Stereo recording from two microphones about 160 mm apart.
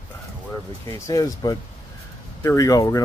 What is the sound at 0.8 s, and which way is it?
Speech, 20° left (ahead or behind).